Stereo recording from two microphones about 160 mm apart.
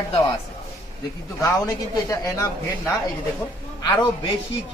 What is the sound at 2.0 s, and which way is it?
Speech, 20° left (ahead or behind).